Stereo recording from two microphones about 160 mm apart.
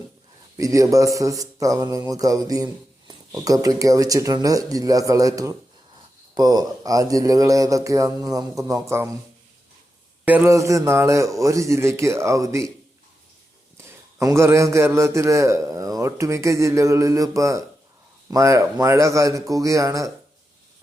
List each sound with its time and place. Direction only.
0.5 s speech: 20° right (ahead or behind)
10.2 s speech: 15° right (ahead or behind)
13.7 s a man's voice: 20° right (ahead or behind)